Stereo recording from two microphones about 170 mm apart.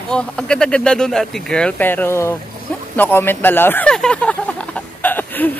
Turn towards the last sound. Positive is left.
turn(degrees=10)  # may be behind; listen again after turning